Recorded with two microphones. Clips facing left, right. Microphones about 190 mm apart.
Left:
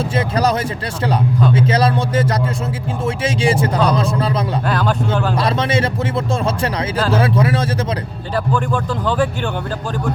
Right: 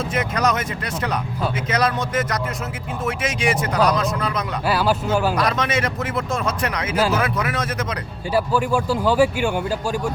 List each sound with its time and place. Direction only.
0.2 s speech: 30° left (ahead or behind)
4.7 s speech: 5° right (ahead or behind)
5.4 s speech: 30° left (ahead or behind)
8.5 s speech: 10° right (ahead or behind)